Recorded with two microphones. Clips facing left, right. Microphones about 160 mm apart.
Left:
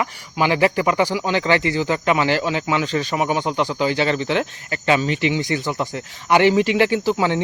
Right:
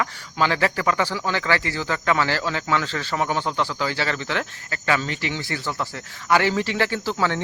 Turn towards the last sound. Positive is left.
turn(degrees=15)  # may be behind; listen again after turning